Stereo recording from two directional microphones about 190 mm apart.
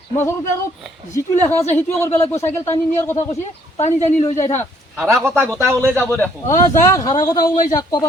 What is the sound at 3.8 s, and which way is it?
Speech, 35° left (ahead or behind).